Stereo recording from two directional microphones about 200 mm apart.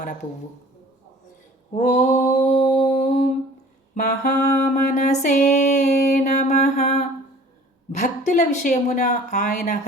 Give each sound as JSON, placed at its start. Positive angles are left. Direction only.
{"t": 1.7, "sound": "a sound", "side_deg": 35}
{"t": 3.9, "sound": "music", "side_deg": 40}
{"t": 7.9, "sound": "a woman's voice", "side_deg": 35}